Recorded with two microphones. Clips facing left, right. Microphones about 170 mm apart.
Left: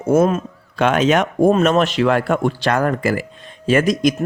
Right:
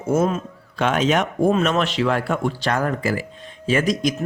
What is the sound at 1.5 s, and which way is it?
A man's voice, 45° left (ahead or behind).